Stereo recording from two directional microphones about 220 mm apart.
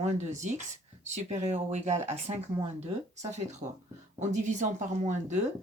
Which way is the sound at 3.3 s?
30° right (ahead or behind).